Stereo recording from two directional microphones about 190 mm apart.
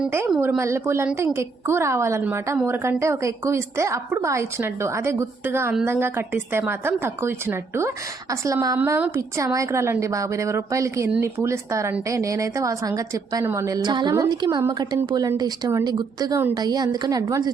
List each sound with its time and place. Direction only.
0.0 s a woman's voice: 15° right (ahead or behind)